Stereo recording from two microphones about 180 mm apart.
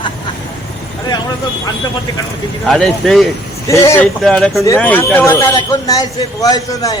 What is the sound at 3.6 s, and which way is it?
Speech, 15° left (ahead or behind).